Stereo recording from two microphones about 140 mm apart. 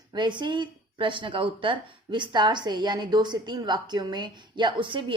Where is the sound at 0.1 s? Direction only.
35° right (ahead or behind).